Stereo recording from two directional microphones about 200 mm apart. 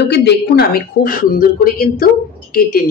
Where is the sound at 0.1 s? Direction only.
55° left (ahead or behind).